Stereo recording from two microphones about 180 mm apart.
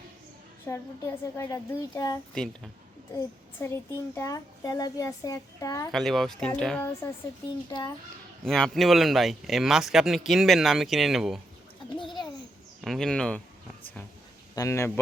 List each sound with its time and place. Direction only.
0.6 s a woman's voice: 15° left (ahead or behind)
2.4 s speech: 5° left (ahead or behind)
3.2 s a child's voice: 15° left (ahead or behind)
5.9 s speech: centre (ahead or behind)
7.7 s a child's voice: 25° left (ahead or behind)
8.4 s speech: 5° left (ahead or behind)
12.8 s speech: centre (ahead or behind)
14.5 s a woman's voice: 15° left (ahead or behind)